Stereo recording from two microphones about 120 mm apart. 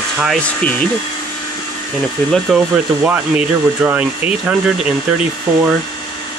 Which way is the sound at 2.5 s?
Centre (ahead or behind).